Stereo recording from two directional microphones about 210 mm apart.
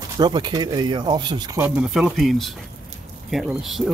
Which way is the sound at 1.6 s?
5° right (ahead or behind).